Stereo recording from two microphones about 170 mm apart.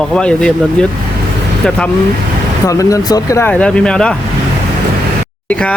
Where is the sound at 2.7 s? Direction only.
20° left (ahead or behind).